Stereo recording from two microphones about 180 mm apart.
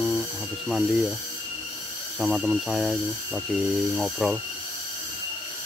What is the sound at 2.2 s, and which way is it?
Speech, centre (ahead or behind).